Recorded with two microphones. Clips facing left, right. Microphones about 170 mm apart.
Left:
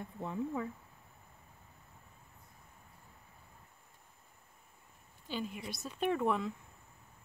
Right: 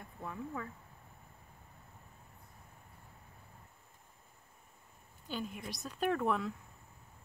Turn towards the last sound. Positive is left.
turn(degrees=0)  # may be behind; listen again after turning